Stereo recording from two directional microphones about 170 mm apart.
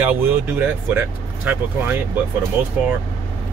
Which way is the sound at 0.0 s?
10° right (ahead or behind).